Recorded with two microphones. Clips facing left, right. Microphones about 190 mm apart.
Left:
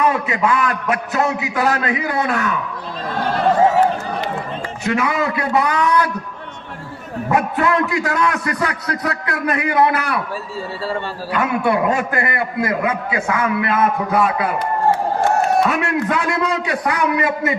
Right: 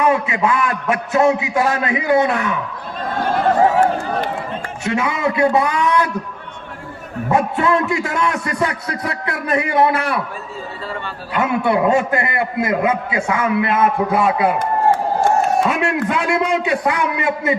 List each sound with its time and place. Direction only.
0.1 s a man's voice: 25° right (ahead or behind)
4.8 s a man's voice: 25° right (ahead or behind)
7.3 s a man's voice: 25° right (ahead or behind)
11.3 s a man's voice: 25° right (ahead or behind)
15.6 s a man's voice: 25° right (ahead or behind)